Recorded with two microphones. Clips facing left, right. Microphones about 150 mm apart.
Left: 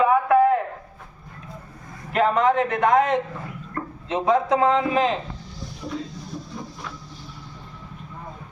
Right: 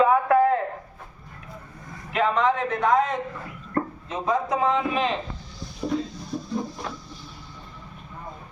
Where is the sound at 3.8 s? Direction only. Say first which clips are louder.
Right 6 dB; 40° right (ahead or behind).